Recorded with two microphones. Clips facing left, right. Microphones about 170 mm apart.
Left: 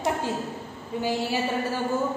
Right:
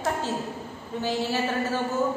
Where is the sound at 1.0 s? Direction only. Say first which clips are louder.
Even; 10° left (ahead or behind).